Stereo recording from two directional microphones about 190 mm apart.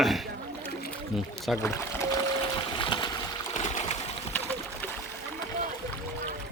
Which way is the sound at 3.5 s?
40° left (ahead or behind).